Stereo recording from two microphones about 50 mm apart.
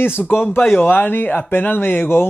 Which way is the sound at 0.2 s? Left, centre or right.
Left.